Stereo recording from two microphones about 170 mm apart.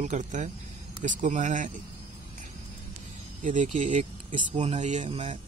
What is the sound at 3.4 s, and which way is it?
Speech, 45° right (ahead or behind).